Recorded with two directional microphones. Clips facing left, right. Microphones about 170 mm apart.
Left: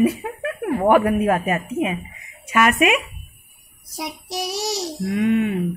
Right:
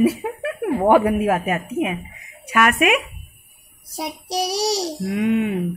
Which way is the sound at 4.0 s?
35° right (ahead or behind).